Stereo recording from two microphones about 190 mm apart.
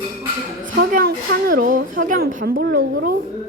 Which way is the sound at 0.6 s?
50° right (ahead or behind).